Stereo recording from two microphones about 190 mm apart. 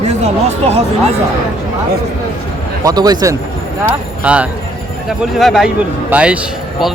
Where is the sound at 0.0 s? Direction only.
35° right (ahead or behind).